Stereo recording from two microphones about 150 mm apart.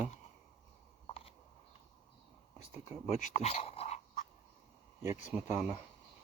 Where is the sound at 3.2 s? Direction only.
50° left (ahead or behind).